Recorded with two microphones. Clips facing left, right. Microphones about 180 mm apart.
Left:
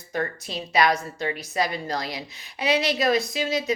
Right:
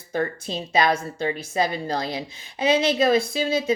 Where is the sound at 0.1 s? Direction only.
30° right (ahead or behind).